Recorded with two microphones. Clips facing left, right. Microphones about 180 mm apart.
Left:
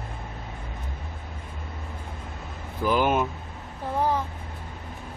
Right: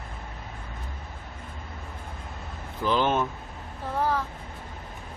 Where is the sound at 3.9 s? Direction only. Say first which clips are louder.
Left 2 dB; 20° left (ahead or behind).